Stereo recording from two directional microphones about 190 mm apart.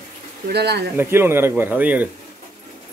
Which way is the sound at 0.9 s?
10° right (ahead or behind).